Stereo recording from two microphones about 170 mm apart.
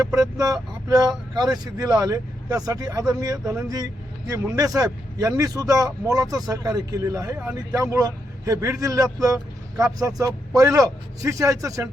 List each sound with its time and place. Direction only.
0.0 s speech: 20° right (ahead or behind)
4.5 s speech: 20° right (ahead or behind)
7.3 s speech: 10° right (ahead or behind)
7.8 s speech: 20° right (ahead or behind)